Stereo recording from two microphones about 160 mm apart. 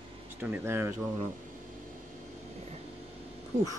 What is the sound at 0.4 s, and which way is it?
Speech, 15° right (ahead or behind).